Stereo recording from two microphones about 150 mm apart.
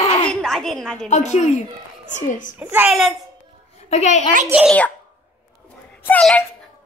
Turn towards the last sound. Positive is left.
turn(degrees=10)  # may be behind; listen again after turning